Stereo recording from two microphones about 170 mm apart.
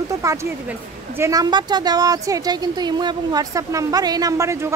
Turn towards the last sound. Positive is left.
turn(degrees=-15)  # may be behind; listen again after turning